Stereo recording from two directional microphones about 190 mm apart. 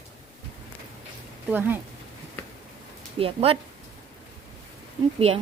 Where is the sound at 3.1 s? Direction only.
30° right (ahead or behind).